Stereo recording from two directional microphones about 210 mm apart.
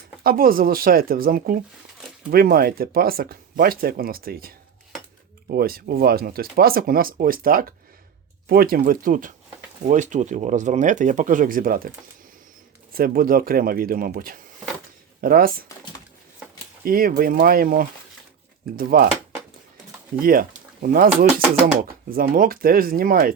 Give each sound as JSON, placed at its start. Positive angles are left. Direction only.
{"t": 0.2, "sound": "speech", "side_deg": -45}
{"t": 12.9, "sound": "speech", "side_deg": -45}
{"t": 16.8, "sound": "speech", "side_deg": -45}
{"t": 20.1, "sound": "speech", "side_deg": -45}